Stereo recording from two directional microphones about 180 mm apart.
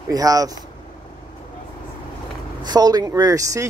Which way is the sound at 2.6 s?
20° right (ahead or behind).